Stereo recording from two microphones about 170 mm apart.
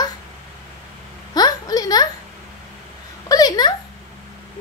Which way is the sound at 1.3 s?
20° left (ahead or behind).